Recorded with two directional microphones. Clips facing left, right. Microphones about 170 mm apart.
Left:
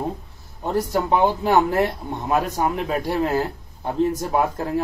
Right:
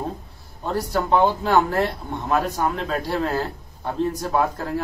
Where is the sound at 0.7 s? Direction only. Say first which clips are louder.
Left 1 dB; 20° left (ahead or behind).